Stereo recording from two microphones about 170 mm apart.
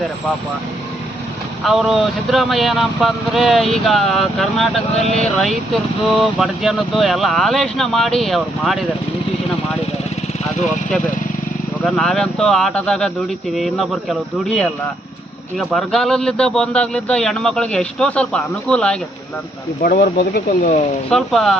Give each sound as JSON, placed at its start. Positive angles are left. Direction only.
{"t": 1.6, "sound": "speech", "side_deg": 0}
{"t": 11.9, "sound": "speech", "side_deg": 0}
{"t": 19.8, "sound": "speech", "side_deg": 60}
{"t": 21.1, "sound": "speech", "side_deg": 0}